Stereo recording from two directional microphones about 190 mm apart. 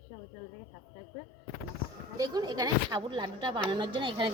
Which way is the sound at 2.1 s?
20° right (ahead or behind).